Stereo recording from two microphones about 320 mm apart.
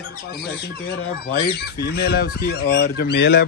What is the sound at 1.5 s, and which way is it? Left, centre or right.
Speech, left.